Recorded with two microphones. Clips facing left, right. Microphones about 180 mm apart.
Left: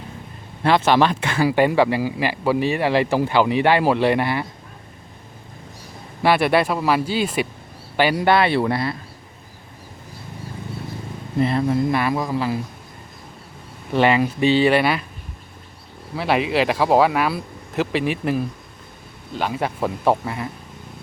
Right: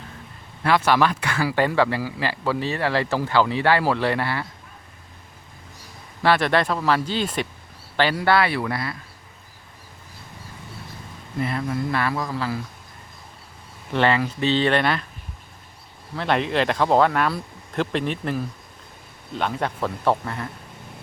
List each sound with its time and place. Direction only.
0.6 s speech: 25° left (ahead or behind)
6.2 s speech: 10° left (ahead or behind); by 9.0 s 25° left (ahead or behind)
11.3 s speech: 25° left (ahead or behind)
11.9 s speech: 15° left (ahead or behind)
13.9 s speech: 15° left (ahead or behind)
16.1 s speech: 5° left (ahead or behind)